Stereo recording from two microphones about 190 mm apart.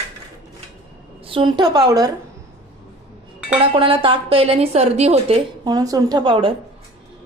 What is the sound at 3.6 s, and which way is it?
Speech, 30° right (ahead or behind).